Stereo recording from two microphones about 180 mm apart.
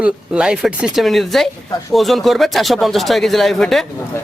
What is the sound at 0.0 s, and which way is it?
A man's voice, 5° right (ahead or behind).